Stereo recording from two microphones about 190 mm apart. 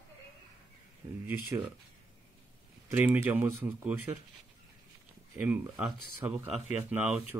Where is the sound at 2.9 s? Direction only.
10° right (ahead or behind).